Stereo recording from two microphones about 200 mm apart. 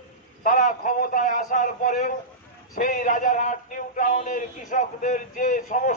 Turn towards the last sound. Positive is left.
turn(degrees=40)  # may be behind; listen again after turning